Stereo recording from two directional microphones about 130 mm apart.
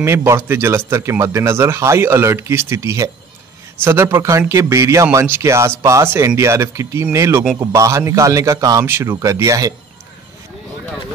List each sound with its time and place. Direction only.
0.0 s a man's voice: 20° right (ahead or behind)